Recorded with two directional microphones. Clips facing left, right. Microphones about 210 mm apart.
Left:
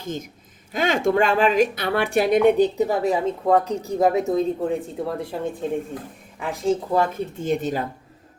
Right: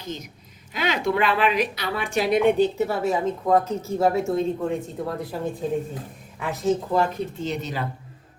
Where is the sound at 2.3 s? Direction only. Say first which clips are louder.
Left 1 dB; 40° left (ahead or behind).